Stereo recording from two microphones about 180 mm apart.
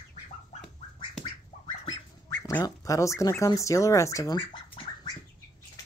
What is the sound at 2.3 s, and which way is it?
Speech, 15° left (ahead or behind).